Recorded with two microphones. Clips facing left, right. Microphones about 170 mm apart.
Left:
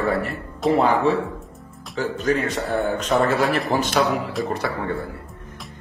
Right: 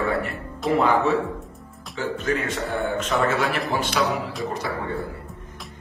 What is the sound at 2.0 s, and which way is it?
A man's voice, 40° left (ahead or behind).